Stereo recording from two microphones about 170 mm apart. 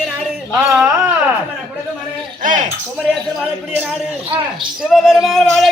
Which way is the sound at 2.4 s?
50° right (ahead or behind).